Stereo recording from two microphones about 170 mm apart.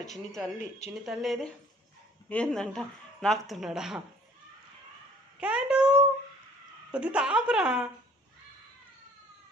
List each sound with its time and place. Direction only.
0.1 s speech: centre (ahead or behind)
0.6 s speech: 40° left (ahead or behind)
1.0 s speech: centre (ahead or behind)
5.4 s a sound: 5° right (ahead or behind)
6.9 s speech: 5° right (ahead or behind)